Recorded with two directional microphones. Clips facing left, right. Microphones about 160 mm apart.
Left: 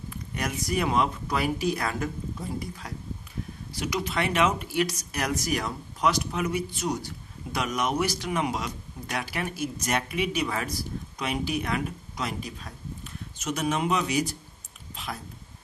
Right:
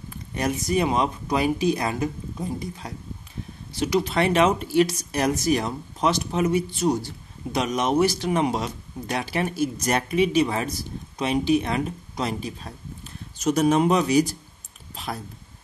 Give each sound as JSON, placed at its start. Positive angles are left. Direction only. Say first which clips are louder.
{"t": 0.4, "sound": "speech", "louder": "right 5 dB", "side_deg": -20}